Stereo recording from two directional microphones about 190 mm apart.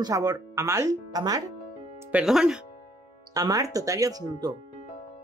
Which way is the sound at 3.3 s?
20° right (ahead or behind).